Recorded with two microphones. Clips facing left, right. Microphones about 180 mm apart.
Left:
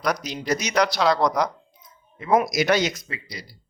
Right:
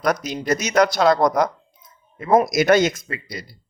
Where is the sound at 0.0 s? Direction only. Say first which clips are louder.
Right 4 dB; 50° right (ahead or behind).